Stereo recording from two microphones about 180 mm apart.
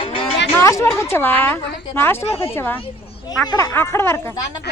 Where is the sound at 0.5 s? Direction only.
15° left (ahead or behind).